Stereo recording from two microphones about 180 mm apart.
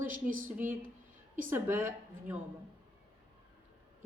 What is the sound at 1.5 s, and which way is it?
Speech, 10° right (ahead or behind).